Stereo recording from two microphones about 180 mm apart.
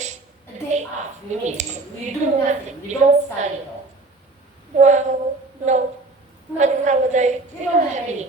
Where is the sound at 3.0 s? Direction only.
40° right (ahead or behind).